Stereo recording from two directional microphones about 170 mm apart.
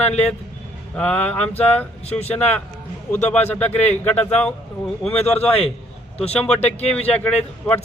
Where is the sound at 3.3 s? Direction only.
10° left (ahead or behind).